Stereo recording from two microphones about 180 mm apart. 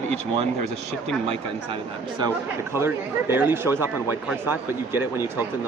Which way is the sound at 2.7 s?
15° right (ahead or behind).